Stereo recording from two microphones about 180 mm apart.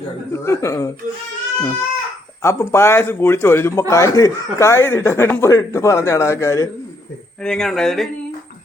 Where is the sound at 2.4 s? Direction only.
15° left (ahead or behind).